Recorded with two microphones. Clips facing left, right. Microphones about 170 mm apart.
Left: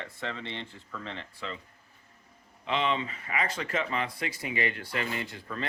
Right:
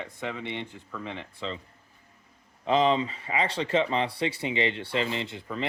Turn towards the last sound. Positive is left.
turn(degrees=-20)  # may be behind; listen again after turning